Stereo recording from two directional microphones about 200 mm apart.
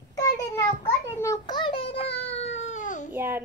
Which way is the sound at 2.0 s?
60° left (ahead or behind).